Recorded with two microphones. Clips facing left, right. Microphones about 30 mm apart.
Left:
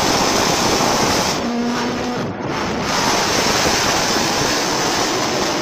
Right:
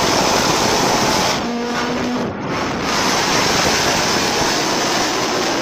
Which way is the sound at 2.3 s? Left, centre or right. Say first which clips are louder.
Even; centre.